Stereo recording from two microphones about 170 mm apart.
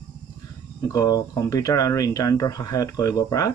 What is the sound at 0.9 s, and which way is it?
Speech, 20° left (ahead or behind).